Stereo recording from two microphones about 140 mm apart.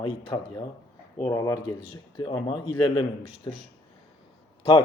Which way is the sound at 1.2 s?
20° left (ahead or behind).